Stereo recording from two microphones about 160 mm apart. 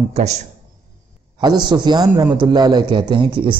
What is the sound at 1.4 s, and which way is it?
A man's voice, 25° right (ahead or behind).